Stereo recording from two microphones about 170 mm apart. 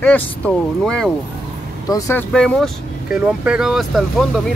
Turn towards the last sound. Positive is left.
turn(degrees=0)  # may be behind; listen again after turning